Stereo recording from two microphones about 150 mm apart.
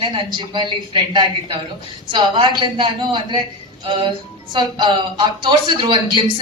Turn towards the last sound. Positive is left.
turn(degrees=-30)  # may be behind; listen again after turning